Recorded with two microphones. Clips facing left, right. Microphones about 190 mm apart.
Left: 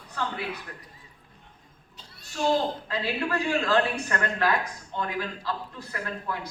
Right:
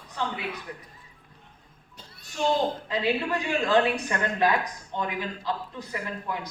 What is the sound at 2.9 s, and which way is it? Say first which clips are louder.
A woman's voice: right 2 dB; 20° right (ahead or behind).